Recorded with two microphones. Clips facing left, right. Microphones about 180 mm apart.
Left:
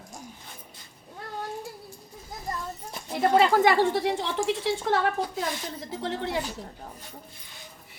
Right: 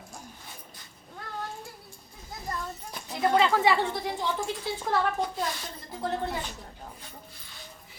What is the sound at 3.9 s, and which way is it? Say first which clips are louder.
Speech: left 4 dB; 75° left (ahead or behind).